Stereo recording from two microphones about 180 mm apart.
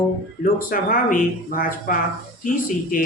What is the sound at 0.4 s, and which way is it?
Speech, 50° left (ahead or behind).